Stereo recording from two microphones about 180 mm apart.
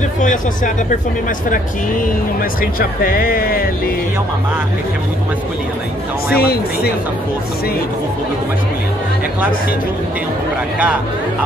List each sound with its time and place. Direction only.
2.6 s speech: 55° left (ahead or behind)
6.3 s speech: 60° left (ahead or behind)